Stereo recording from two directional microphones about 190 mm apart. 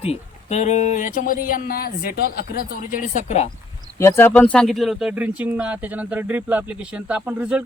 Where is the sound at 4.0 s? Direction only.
15° left (ahead or behind).